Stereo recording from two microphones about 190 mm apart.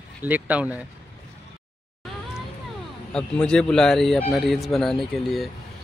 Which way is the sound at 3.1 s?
5° left (ahead or behind).